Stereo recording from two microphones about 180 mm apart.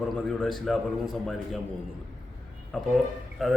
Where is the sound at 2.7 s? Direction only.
Centre (ahead or behind).